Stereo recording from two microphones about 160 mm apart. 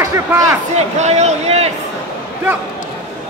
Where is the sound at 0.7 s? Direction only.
45° right (ahead or behind).